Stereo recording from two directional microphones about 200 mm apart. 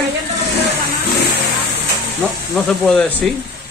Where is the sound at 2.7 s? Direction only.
10° left (ahead or behind).